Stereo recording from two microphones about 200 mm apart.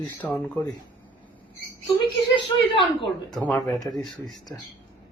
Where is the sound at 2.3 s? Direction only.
25° left (ahead or behind).